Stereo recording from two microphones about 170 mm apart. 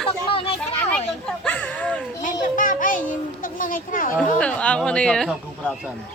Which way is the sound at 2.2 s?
50° left (ahead or behind).